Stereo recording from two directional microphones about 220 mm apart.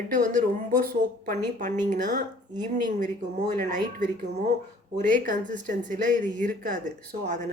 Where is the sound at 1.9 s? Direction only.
35° right (ahead or behind).